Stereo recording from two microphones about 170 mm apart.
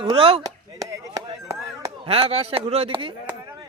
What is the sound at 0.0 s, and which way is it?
Speech, 30° right (ahead or behind).